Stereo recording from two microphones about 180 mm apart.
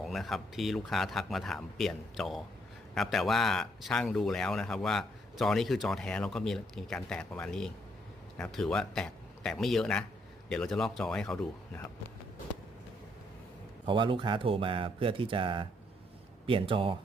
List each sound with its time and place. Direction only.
0.0 s a man's voice: centre (ahead or behind)
13.8 s speech: 25° right (ahead or behind)